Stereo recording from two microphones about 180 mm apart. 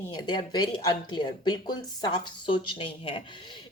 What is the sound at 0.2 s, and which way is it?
A woman's voice, 25° left (ahead or behind).